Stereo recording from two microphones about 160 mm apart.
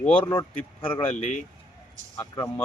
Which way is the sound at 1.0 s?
40° left (ahead or behind).